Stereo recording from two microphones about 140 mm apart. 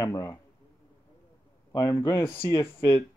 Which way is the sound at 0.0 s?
25° left (ahead or behind).